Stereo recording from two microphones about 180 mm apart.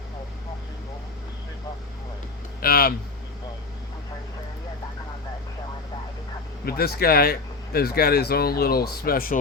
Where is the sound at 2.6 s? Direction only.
55° left (ahead or behind).